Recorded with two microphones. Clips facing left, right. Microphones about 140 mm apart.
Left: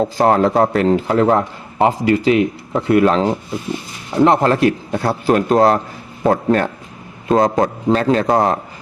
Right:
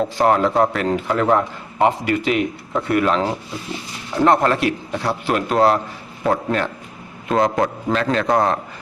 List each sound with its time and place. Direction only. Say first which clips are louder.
0.0 s a man's voice: left 3 dB; 35° left (ahead or behind)